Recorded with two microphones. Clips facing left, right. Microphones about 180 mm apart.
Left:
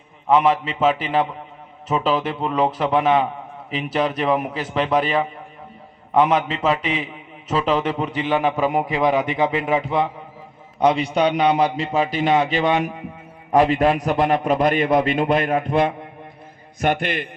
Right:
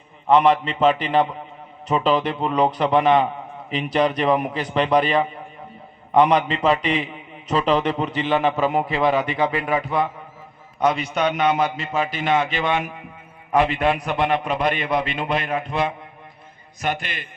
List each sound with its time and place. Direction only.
0.3 s a man's voice: 5° left (ahead or behind); by 17.2 s 55° left (ahead or behind)